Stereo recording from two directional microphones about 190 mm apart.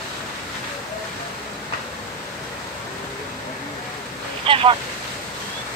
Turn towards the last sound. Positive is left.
turn(degrees=-30)  # may be behind; listen again after turning